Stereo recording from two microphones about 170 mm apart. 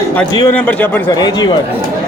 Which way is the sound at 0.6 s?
10° left (ahead or behind).